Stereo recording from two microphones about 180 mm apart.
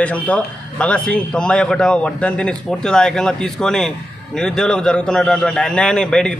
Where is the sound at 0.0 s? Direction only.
5° left (ahead or behind).